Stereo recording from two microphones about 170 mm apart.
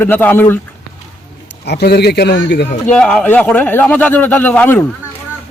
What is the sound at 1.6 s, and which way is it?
A man's voice, 75° left (ahead or behind).